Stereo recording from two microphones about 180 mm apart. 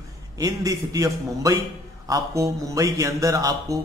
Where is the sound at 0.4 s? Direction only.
20° right (ahead or behind).